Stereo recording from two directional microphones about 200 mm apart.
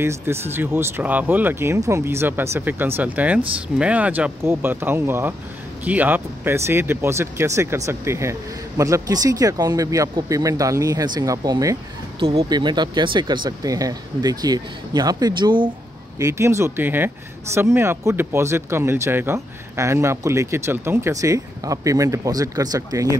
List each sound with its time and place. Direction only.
0.0 s speech: 10° right (ahead or behind)